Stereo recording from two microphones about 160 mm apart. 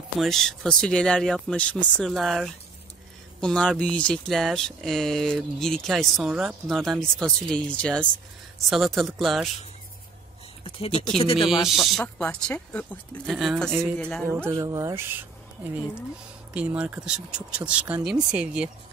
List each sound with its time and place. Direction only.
0.2 s speech: centre (ahead or behind)
10.6 s speech: 35° left (ahead or behind)
11.3 s speech: centre (ahead or behind)
14.5 s speech: 20° right (ahead or behind)